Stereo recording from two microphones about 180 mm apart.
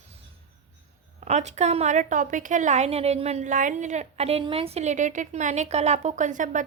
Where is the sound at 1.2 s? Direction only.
40° right (ahead or behind).